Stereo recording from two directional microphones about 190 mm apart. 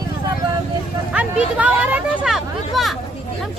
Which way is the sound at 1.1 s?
5° right (ahead or behind).